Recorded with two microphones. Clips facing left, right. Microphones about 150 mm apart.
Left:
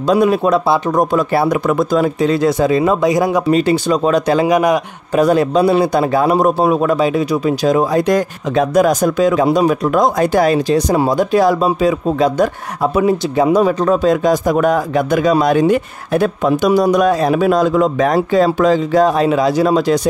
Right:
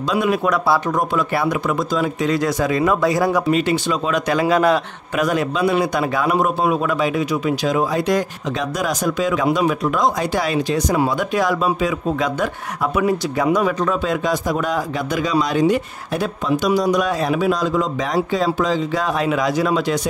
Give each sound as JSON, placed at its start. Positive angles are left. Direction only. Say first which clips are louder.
{"t": 0.1, "sound": "a man's voice", "louder": "left 7 dB", "side_deg": 35}
{"t": 1.7, "sound": "speech", "louder": "left 6 dB", "side_deg": 50}
{"t": 2.1, "sound": "speech", "louder": "left 5 dB", "side_deg": 30}
{"t": 3.4, "sound": "a man's voice", "louder": "left 5 dB", "side_deg": 35}
{"t": 4.5, "sound": "a man's voice", "louder": "even", "side_deg": 15}
{"t": 5.1, "sound": "a man's voice", "louder": "left 7 dB", "side_deg": 35}
{"t": 19.0, "sound": "a man's voice", "louder": "left 6 dB", "side_deg": 35}